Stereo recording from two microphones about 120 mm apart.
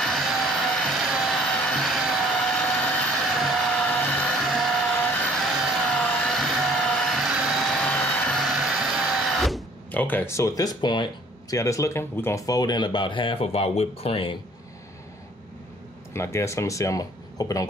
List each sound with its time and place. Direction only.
0.0 s music: centre (ahead or behind)
2.6 s vehicle: 10° left (ahead or behind)
3.3 s vehicle: centre (ahead or behind)
3.8 s music: 10° left (ahead or behind)
4.5 s a sound: centre (ahead or behind)
5.3 s vehicle: 5° left (ahead or behind)
7.8 s vacuum cleaner: 10° left (ahead or behind)
9.8 s speech: 15° left (ahead or behind); by 11.1 s 40° left (ahead or behind)
11.5 s speech: 25° left (ahead or behind); by 14.4 s 50° left (ahead or behind)
16.1 s speech: 20° left (ahead or behind)